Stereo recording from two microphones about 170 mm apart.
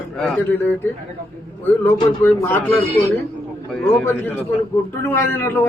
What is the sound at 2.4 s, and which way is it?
A man's voice, 10° left (ahead or behind).